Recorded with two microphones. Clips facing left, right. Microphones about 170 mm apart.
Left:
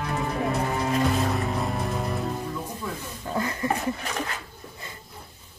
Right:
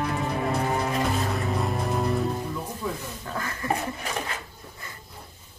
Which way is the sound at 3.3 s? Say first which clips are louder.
Left 6 dB; 20° left (ahead or behind).